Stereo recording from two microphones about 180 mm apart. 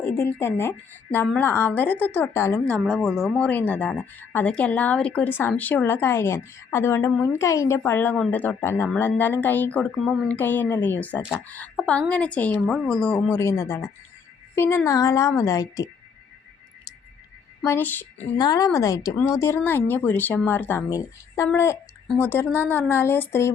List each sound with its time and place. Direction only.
0.0 s a woman's voice: 15° left (ahead or behind)
17.7 s a woman's voice: 10° left (ahead or behind)
18.3 s a woman's voice: 20° left (ahead or behind)